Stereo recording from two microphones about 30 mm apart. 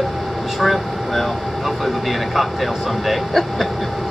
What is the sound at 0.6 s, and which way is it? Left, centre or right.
Speech, centre.